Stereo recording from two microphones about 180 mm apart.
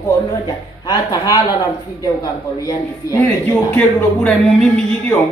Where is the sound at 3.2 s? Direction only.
10° left (ahead or behind).